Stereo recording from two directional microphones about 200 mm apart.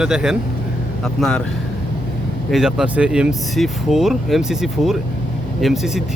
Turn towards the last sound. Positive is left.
turn(degrees=0)  # may be behind; listen again after turning